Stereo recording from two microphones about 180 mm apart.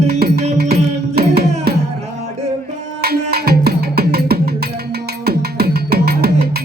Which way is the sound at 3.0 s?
60° right (ahead or behind).